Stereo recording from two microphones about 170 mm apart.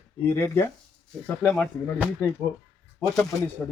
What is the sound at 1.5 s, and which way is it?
Speech, centre (ahead or behind).